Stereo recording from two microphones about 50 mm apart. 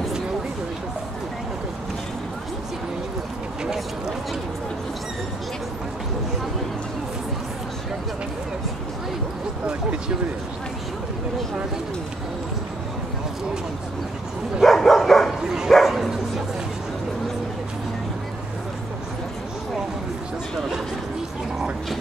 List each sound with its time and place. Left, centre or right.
9.7 s speech: centre
14.6 s dog: centre
15.4 s dog: centre
15.7 s bow-wow: centre